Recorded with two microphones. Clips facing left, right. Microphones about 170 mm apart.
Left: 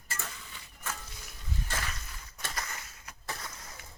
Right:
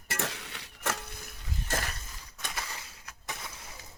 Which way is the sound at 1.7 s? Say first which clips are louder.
Right 6 dB; 45° right (ahead or behind).